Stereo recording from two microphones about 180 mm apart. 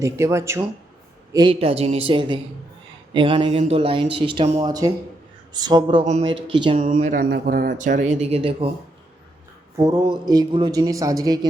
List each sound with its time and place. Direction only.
0.0 s speech: 15° right (ahead or behind)
1.3 s speech: 25° right (ahead or behind)
6.7 s speech: 45° right (ahead or behind)
8.6 s speech: 30° right (ahead or behind)